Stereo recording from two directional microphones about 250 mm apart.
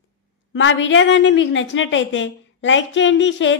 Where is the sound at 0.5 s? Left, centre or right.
Left.